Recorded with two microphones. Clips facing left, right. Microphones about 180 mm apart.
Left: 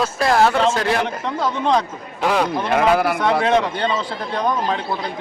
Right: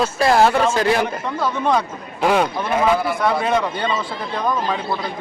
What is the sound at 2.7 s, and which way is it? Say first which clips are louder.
Speech: left 1 dB; 75° left (ahead or behind).